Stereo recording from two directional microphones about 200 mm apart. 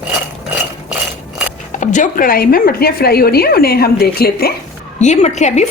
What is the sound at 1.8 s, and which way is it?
A woman's voice, 40° left (ahead or behind).